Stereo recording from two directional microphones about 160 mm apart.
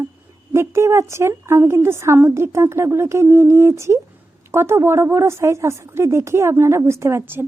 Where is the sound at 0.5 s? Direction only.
15° right (ahead or behind).